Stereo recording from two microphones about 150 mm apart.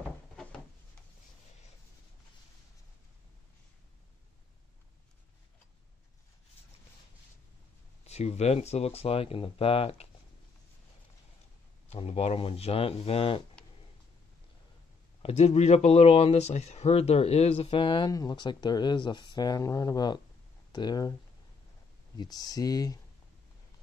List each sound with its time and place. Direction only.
8.0 s speech: 45° left (ahead or behind)
11.9 s speech: 40° left (ahead or behind)
15.2 s speech: 45° left (ahead or behind); by 21.1 s 30° left (ahead or behind)
22.1 s speech: 25° left (ahead or behind)